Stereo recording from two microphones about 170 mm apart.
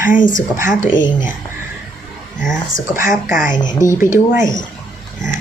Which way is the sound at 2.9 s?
15° right (ahead or behind).